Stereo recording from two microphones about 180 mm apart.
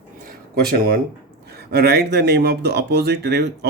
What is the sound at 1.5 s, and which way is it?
Speech, 60° right (ahead or behind).